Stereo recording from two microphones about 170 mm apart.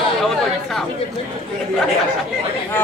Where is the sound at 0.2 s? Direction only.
Centre (ahead or behind).